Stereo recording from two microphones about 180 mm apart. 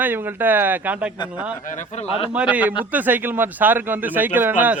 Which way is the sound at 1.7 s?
45° left (ahead or behind).